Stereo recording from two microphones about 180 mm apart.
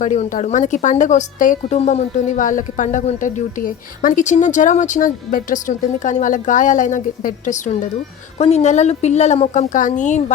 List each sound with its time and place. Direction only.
0.0 s speech: 40° left (ahead or behind)
8.4 s a woman's voice: 35° left (ahead or behind)